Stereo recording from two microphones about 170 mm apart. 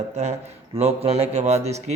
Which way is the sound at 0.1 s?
40° right (ahead or behind).